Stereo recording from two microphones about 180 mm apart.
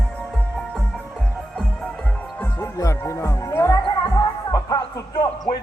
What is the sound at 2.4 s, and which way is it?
Music, 15° left (ahead or behind).